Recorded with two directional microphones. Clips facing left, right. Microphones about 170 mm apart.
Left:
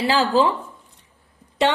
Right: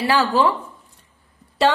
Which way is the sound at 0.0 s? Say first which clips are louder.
Even; 25° left (ahead or behind).